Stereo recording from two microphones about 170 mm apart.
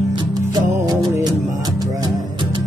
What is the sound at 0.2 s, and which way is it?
Music, 25° right (ahead or behind).